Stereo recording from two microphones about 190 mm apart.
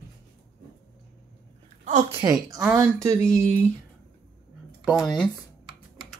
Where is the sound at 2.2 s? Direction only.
20° right (ahead or behind).